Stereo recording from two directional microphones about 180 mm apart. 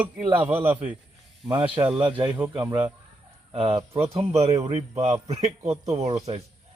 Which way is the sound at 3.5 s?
30° right (ahead or behind).